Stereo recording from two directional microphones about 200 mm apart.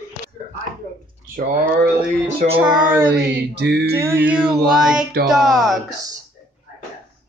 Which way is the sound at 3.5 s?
55° right (ahead or behind).